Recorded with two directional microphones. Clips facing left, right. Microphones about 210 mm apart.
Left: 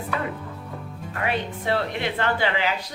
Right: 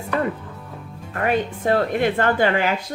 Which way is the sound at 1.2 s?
45° right (ahead or behind).